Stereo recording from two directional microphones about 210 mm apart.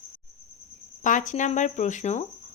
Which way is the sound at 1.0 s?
35° left (ahead or behind).